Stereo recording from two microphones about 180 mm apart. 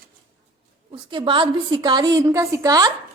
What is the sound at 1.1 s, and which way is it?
Speech, 25° right (ahead or behind).